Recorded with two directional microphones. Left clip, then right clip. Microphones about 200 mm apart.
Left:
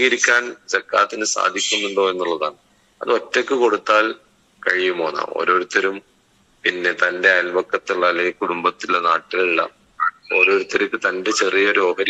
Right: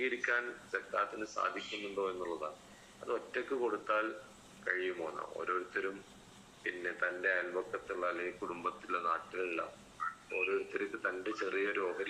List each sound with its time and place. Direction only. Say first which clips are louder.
0.0 s a man's voice: left 18 dB; 55° left (ahead or behind)